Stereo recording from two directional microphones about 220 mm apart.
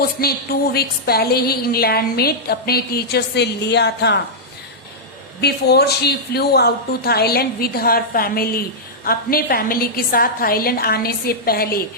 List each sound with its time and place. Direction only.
0.0 s a woman's voice: 45° left (ahead or behind)
5.4 s a woman's voice: 50° left (ahead or behind)